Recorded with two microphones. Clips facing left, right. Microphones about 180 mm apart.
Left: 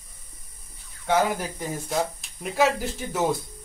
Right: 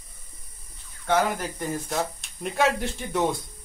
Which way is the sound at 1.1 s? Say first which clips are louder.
Left 1 dB; 10° left (ahead or behind).